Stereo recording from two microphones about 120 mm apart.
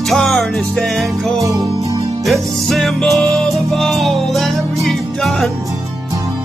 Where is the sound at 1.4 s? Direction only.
30° right (ahead or behind).